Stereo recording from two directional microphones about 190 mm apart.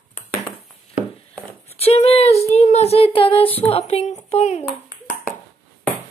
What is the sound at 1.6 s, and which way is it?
Speech, 30° left (ahead or behind).